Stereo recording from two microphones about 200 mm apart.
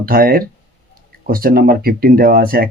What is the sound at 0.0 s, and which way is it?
Speech, 45° right (ahead or behind).